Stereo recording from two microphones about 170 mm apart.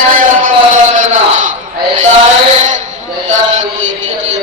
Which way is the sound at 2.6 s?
45° right (ahead or behind).